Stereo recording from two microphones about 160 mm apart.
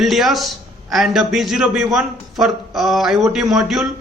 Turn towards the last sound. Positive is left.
turn(degrees=0)  # may be behind; listen again after turning